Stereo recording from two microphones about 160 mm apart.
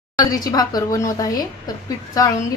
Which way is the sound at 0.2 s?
25° left (ahead or behind).